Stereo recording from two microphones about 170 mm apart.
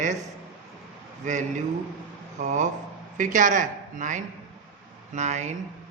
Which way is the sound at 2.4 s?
45° right (ahead or behind).